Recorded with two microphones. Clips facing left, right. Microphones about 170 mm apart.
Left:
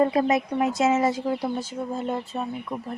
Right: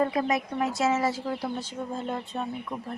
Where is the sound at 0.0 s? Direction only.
25° left (ahead or behind).